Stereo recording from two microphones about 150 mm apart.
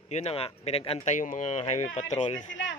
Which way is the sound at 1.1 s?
55° left (ahead or behind).